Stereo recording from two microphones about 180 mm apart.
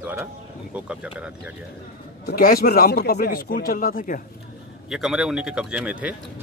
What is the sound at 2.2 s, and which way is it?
Speech, 55° left (ahead or behind).